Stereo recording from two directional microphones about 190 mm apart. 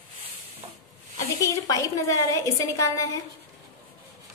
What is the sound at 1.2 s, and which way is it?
A woman's voice, 15° left (ahead or behind).